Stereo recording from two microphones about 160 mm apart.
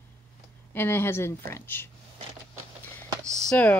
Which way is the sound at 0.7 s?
15° left (ahead or behind).